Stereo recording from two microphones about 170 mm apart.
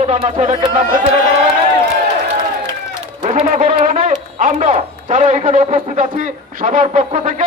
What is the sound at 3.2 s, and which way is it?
Speech, 45° right (ahead or behind).